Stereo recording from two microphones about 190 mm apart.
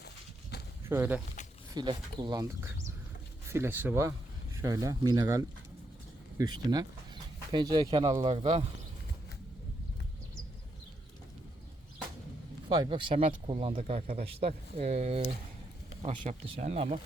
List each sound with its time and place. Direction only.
0.9 s speech: 10° right (ahead or behind)
1.7 s speech: 25° right (ahead or behind)
12.6 s speech: 25° right (ahead or behind)